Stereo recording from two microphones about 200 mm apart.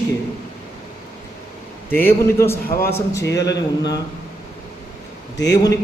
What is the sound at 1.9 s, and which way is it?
Speech, 10° left (ahead or behind).